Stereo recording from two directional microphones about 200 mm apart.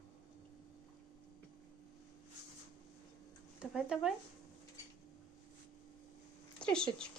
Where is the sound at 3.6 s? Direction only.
5° right (ahead or behind).